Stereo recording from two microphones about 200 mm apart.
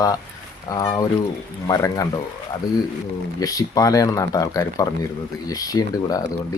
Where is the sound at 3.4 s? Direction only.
20° left (ahead or behind).